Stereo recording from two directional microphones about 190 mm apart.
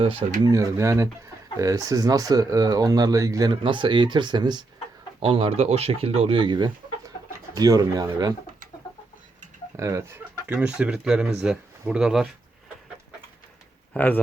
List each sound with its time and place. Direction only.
0.0 s speech: 30° right (ahead or behind)
0.4 s speech: 15° right (ahead or behind)
9.7 s speech: 15° right (ahead or behind)
13.9 s speech: 10° left (ahead or behind)